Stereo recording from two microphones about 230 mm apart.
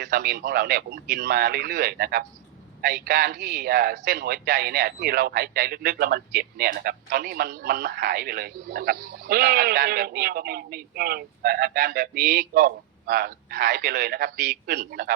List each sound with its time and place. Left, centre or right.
0.0 s a man's voice: right